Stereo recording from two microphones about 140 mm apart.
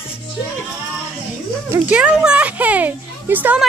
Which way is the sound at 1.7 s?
10° right (ahead or behind).